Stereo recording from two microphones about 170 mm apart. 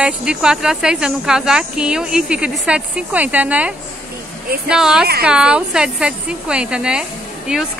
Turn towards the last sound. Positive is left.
turn(degrees=-5)  # may be behind; listen again after turning